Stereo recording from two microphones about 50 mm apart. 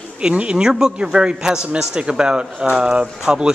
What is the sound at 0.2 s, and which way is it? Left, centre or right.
A man's voice, right.